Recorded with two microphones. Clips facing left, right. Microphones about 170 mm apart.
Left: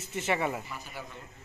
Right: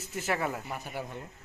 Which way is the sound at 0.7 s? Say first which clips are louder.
Right 5 dB; 55° right (ahead or behind).